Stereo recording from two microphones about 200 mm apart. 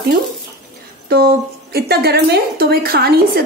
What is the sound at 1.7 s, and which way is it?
A woman's voice, 50° right (ahead or behind).